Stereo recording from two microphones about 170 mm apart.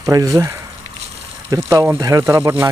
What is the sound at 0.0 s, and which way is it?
Speech, 20° right (ahead or behind).